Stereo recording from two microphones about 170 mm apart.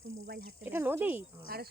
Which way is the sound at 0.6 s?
10° right (ahead or behind).